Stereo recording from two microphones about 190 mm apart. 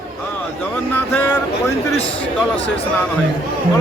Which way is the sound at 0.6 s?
10° left (ahead or behind).